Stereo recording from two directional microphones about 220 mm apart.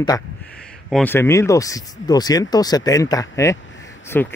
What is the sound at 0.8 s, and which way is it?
Speech, 5° left (ahead or behind).